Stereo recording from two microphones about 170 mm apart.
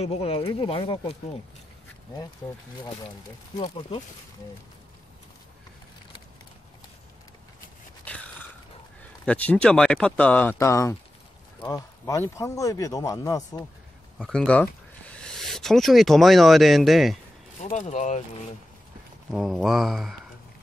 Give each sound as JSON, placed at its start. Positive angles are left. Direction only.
{"t": 0.0, "sound": "speech", "side_deg": 35}
{"t": 3.5, "sound": "speech", "side_deg": 30}
{"t": 8.0, "sound": "a sound", "side_deg": 10}
{"t": 9.0, "sound": "speech", "side_deg": 5}
{"t": 14.1, "sound": "speech", "side_deg": 5}
{"t": 17.6, "sound": "speech", "side_deg": 45}
{"t": 19.3, "sound": "mantra", "side_deg": 0}